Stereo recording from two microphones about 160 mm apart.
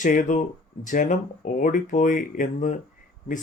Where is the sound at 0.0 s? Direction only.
50° left (ahead or behind).